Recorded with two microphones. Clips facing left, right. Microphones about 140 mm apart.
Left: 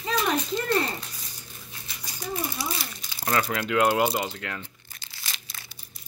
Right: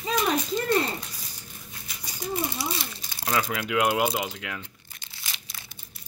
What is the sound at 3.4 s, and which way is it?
Speech, 5° right (ahead or behind).